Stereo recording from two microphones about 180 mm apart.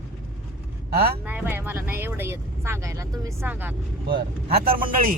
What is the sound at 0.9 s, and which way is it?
Speech, 60° right (ahead or behind).